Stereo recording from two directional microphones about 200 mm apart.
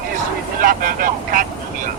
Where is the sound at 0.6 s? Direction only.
45° right (ahead or behind).